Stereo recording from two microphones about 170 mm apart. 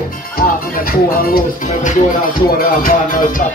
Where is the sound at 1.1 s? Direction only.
55° left (ahead or behind).